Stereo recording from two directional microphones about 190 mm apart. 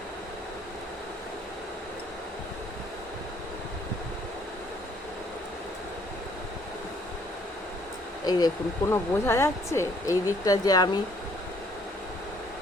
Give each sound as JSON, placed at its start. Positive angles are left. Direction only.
{"t": 8.2, "sound": "speech", "side_deg": 20}